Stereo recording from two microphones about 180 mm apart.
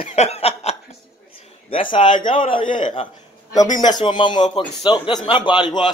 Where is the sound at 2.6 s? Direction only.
45° left (ahead or behind).